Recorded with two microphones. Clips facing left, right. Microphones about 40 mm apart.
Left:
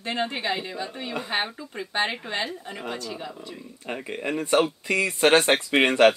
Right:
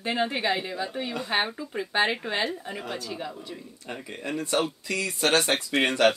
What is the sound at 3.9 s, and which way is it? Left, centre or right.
Speech, left.